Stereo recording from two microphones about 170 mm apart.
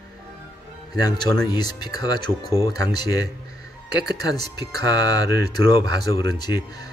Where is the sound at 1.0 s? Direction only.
25° left (ahead or behind).